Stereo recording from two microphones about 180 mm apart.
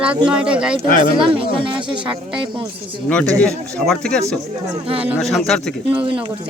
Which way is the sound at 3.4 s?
5° left (ahead or behind).